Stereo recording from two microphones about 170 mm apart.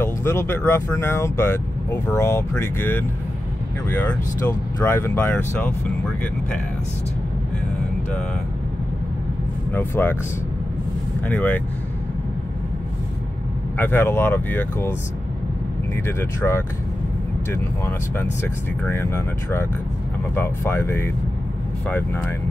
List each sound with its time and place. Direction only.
0.0 s speech: 15° left (ahead or behind)
9.7 s speech: 10° left (ahead or behind)
11.2 s speech: 10° left (ahead or behind)
13.7 s speech: 10° left (ahead or behind)
16.1 s speech: 15° left (ahead or behind)